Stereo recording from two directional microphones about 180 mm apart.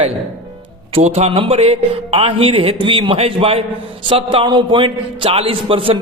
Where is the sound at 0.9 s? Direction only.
35° right (ahead or behind).